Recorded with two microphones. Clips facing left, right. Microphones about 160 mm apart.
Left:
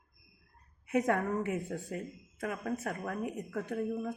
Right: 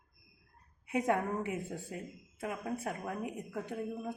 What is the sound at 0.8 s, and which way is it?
Speech, 15° right (ahead or behind).